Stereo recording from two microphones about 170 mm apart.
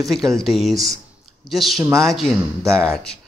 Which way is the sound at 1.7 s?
20° right (ahead or behind).